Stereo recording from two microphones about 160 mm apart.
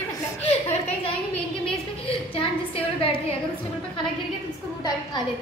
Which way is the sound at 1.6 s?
35° left (ahead or behind).